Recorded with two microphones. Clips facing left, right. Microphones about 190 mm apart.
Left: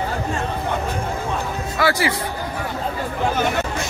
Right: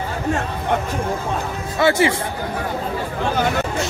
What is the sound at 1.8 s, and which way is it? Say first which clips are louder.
Speech: right 4 dB; 25° right (ahead or behind).